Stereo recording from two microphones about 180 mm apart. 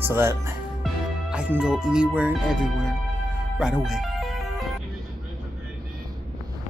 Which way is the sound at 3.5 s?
5° right (ahead or behind).